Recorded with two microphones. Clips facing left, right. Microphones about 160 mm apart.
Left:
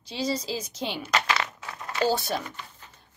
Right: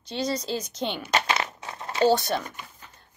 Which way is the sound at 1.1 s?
25° right (ahead or behind).